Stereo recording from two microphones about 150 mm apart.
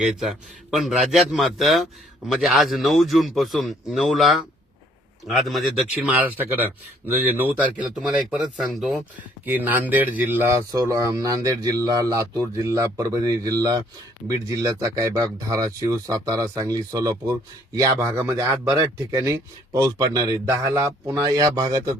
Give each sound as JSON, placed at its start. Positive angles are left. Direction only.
{"t": 0.0, "sound": "speech", "side_deg": 0}
{"t": 9.6, "sound": "a man's voice", "side_deg": -10}